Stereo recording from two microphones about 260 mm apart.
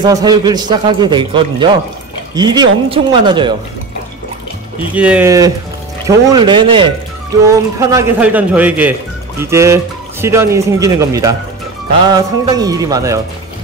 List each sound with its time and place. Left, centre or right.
0.0 s a man's voice: centre
4.9 s a man's voice: centre